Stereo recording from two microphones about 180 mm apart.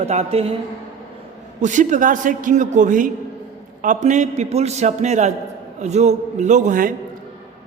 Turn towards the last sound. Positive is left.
turn(degrees=-50)  # may be behind; listen again after turning